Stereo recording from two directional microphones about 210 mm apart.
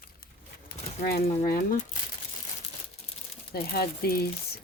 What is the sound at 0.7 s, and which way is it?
Bird, 45° left (ahead or behind).